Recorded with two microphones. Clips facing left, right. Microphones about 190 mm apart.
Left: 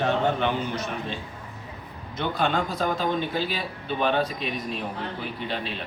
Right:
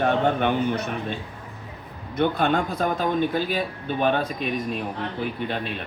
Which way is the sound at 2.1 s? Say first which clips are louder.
Right 4 dB; 55° right (ahead or behind).